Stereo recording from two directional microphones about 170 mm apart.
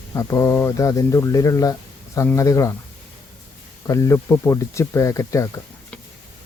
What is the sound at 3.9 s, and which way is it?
Speech, 15° left (ahead or behind).